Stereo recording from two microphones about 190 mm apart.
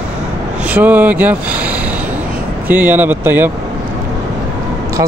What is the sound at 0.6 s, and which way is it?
Speech, 10° right (ahead or behind).